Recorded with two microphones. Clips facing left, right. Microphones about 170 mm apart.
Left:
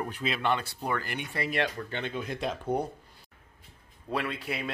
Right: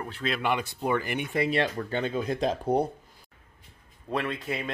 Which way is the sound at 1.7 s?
40° right (ahead or behind).